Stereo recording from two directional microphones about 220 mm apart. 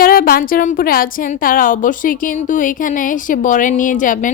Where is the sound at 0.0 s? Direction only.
40° left (ahead or behind).